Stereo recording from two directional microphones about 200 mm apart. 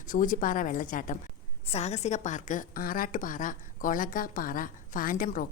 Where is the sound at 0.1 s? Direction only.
40° left (ahead or behind).